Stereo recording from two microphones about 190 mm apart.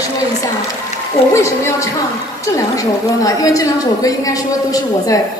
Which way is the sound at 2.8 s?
15° left (ahead or behind).